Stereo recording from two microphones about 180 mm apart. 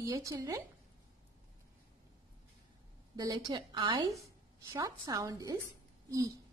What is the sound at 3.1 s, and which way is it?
A woman's voice, 20° right (ahead or behind).